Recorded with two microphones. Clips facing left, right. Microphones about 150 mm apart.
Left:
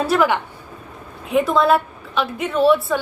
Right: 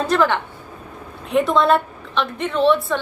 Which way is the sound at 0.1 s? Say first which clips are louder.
Even; 10° left (ahead or behind).